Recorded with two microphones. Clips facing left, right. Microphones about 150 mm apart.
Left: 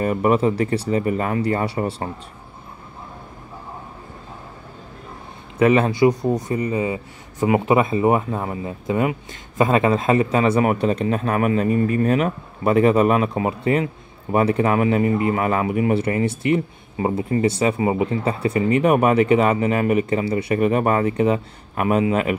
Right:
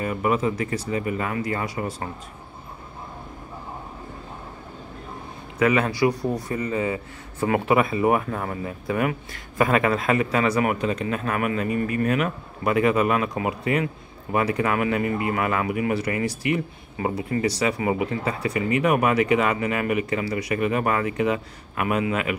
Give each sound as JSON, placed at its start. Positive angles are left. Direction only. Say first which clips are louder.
{"t": 0.0, "sound": "speech", "louder": "left 5 dB", "side_deg": 40}
{"t": 5.6, "sound": "speech", "louder": "left 5 dB", "side_deg": 25}